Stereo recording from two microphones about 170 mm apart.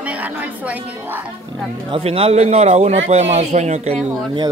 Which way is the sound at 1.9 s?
35° right (ahead or behind).